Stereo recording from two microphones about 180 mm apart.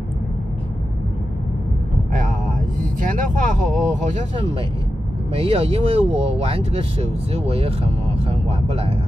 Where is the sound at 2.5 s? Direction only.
45° right (ahead or behind).